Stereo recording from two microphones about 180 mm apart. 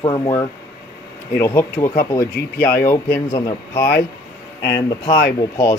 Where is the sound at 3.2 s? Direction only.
30° left (ahead or behind).